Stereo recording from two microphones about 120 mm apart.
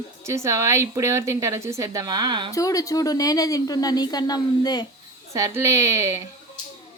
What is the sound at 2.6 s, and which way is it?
Speech, 30° left (ahead or behind).